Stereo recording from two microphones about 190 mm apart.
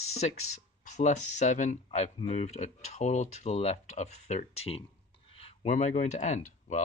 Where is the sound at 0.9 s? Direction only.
40° left (ahead or behind).